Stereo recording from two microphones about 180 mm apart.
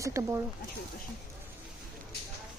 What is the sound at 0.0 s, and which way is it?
Speech, 15° right (ahead or behind).